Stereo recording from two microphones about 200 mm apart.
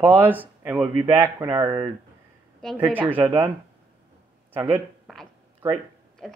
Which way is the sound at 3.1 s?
10° right (ahead or behind).